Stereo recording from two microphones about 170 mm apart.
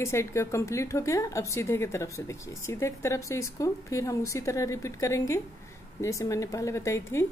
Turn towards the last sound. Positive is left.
turn(degrees=15)  # may be behind; listen again after turning